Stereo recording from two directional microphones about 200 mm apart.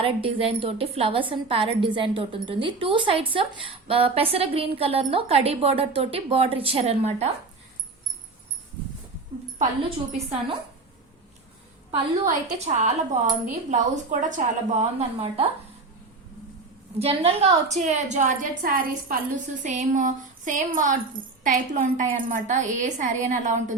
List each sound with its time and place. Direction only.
0.0 s a woman's voice: 25° right (ahead or behind)
12.2 s speech: 40° right (ahead or behind)
17.0 s speech: 30° right (ahead or behind)